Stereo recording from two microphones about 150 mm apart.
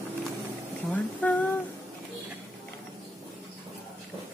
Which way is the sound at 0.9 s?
10° left (ahead or behind).